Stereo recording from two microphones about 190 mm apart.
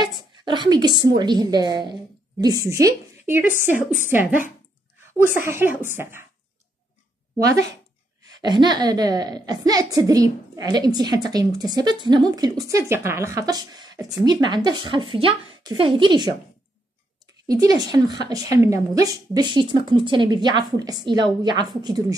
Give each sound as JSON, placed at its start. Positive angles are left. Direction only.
{"t": 0.5, "sound": "a woman's voice", "side_deg": -25}
{"t": 7.3, "sound": "a woman's voice", "side_deg": -15}
{"t": 17.5, "sound": "a woman's voice", "side_deg": -20}